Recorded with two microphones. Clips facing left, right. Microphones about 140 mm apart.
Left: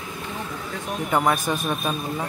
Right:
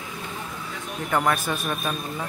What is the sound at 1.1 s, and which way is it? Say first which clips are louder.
A man's voice: left 2 dB; 15° left (ahead or behind).